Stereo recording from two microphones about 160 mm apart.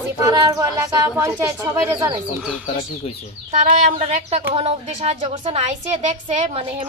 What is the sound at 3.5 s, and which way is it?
Speech, 50° right (ahead or behind).